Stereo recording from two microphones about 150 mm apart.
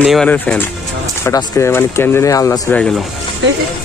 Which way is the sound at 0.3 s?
10° left (ahead or behind).